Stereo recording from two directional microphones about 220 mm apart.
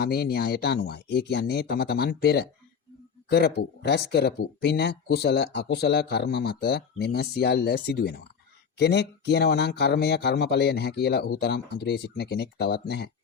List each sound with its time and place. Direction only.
0.0 s speech: 45° left (ahead or behind)